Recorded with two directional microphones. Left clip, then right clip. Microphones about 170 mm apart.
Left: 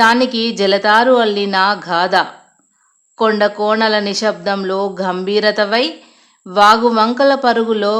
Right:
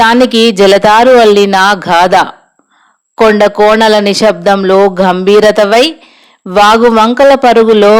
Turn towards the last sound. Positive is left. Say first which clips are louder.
# right 10 dB
turn(degrees=-40)  # may be behind; listen again after turning